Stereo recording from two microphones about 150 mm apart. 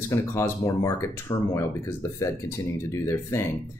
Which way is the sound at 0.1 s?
20° left (ahead or behind).